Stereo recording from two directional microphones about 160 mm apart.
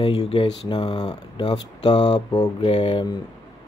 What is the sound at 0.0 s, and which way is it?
Speech, 35° left (ahead or behind).